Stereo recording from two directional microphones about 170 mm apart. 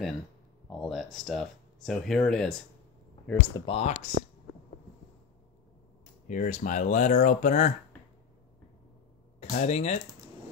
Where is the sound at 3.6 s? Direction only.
40° left (ahead or behind).